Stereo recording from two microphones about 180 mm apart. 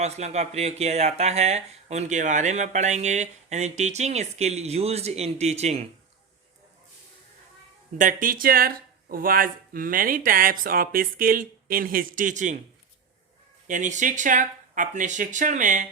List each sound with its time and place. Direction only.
0.0 s speech: 35° right (ahead or behind)
7.9 s speech: 50° right (ahead or behind)
13.7 s speech: 45° right (ahead or behind)